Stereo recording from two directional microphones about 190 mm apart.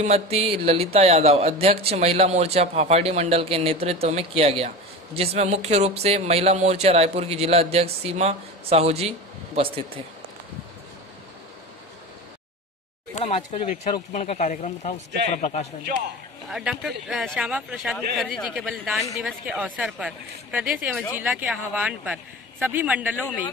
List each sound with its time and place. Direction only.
0.0 s speech: 35° right (ahead or behind)
13.1 s speech: 35° left (ahead or behind)
16.4 s speech: 5° right (ahead or behind)